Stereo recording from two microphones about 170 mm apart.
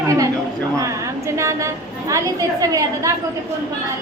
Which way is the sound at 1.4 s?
15° right (ahead or behind).